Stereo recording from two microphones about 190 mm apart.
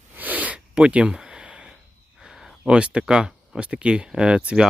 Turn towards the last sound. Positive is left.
turn(degrees=-5)  # may be behind; listen again after turning